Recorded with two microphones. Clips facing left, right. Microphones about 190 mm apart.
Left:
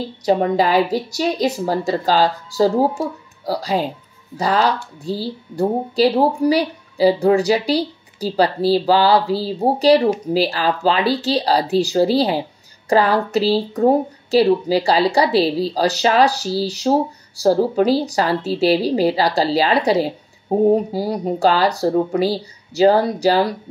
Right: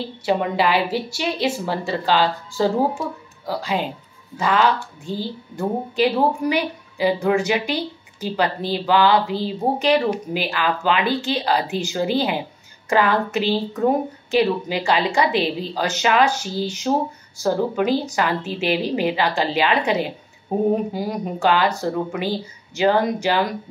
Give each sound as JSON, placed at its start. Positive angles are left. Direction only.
{"t": 0.2, "sound": "speech", "side_deg": 40}